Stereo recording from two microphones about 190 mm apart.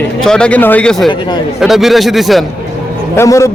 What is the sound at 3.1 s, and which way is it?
Speech, 15° left (ahead or behind).